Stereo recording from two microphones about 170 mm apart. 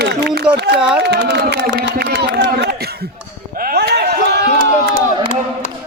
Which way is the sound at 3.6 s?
65° right (ahead or behind).